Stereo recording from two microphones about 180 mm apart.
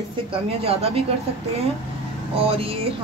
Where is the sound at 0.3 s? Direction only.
35° right (ahead or behind).